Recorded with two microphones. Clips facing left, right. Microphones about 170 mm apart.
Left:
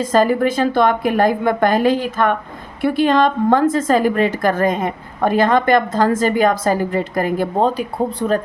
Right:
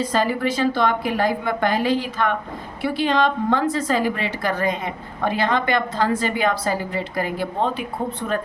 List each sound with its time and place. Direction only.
0.0 s a woman's voice: 45° left (ahead or behind)